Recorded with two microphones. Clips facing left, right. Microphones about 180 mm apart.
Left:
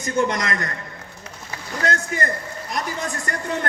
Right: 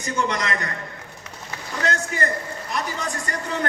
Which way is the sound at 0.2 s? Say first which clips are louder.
Left 4 dB; 45° left (ahead or behind).